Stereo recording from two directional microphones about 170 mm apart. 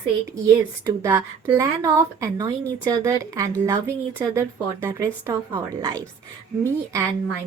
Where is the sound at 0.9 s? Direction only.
15° right (ahead or behind).